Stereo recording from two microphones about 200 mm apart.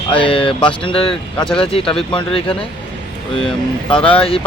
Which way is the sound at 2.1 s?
25° left (ahead or behind).